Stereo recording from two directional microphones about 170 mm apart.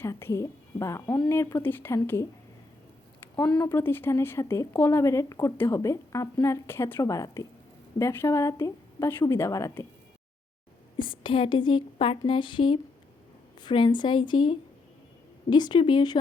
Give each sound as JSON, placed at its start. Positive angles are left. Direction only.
{"t": 0.0, "sound": "speech", "side_deg": 15}
{"t": 3.2, "sound": "a sound", "side_deg": 10}
{"t": 3.6, "sound": "speech", "side_deg": 15}
{"t": 10.9, "sound": "a woman's voice", "side_deg": 30}